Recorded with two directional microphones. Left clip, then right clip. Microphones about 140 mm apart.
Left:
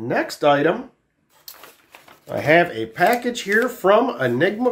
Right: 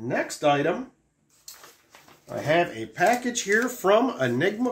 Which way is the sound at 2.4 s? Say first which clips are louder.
Left 7 dB; 45° left (ahead or behind).